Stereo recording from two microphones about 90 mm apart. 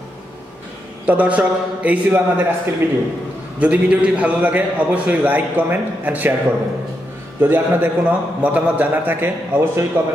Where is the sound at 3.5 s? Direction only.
15° right (ahead or behind).